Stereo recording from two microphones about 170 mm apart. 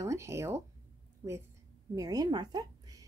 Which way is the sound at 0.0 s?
15° right (ahead or behind).